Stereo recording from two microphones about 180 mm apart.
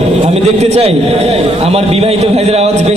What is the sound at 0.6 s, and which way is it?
A man's voice, 35° right (ahead or behind).